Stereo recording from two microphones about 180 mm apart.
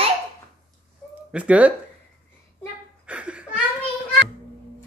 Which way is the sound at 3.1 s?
5° right (ahead or behind).